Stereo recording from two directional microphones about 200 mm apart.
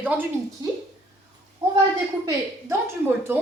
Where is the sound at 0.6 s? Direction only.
20° right (ahead or behind).